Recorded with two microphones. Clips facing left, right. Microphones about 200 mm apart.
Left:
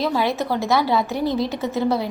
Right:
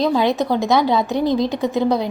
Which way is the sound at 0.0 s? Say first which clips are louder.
Right 4 dB; 20° right (ahead or behind).